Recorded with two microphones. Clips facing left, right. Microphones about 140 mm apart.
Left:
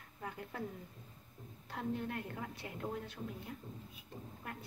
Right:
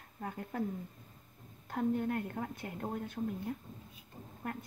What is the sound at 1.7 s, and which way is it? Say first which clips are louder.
Speech: right 7 dB; 45° right (ahead or behind).